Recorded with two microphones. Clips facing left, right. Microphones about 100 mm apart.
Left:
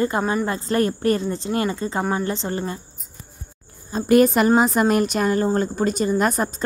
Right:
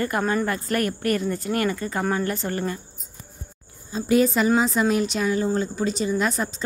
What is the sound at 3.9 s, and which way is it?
A woman's voice, 55° left (ahead or behind).